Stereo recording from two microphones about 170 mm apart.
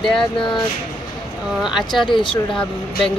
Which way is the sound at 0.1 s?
30° left (ahead or behind).